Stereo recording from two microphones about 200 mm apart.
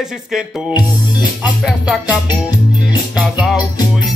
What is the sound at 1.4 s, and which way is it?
Music, 5° right (ahead or behind).